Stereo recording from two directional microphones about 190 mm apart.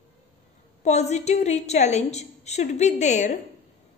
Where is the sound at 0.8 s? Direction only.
35° left (ahead or behind).